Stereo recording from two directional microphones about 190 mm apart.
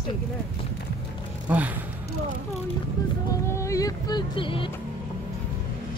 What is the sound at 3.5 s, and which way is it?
Speech, 15° left (ahead or behind).